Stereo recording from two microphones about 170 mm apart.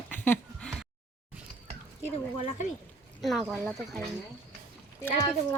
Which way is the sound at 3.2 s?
Centre (ahead or behind).